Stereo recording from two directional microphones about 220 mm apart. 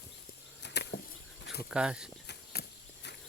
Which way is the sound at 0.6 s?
50° left (ahead or behind).